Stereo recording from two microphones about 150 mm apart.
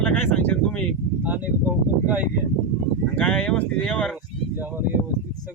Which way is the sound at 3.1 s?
5° left (ahead or behind).